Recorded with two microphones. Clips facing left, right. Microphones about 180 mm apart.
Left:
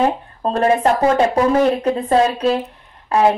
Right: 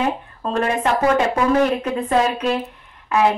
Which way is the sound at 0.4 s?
35° left (ahead or behind).